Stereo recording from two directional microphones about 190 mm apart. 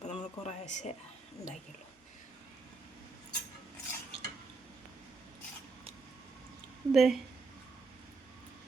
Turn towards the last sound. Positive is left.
turn(degrees=0)  # may be behind; listen again after turning